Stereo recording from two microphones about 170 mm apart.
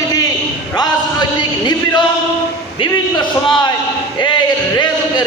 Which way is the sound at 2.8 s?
25° left (ahead or behind).